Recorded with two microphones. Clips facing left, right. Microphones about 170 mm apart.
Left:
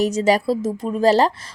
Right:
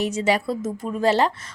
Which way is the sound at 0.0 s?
40° left (ahead or behind).